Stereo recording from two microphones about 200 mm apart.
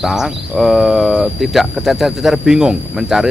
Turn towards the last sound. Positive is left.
turn(degrees=-5)  # may be behind; listen again after turning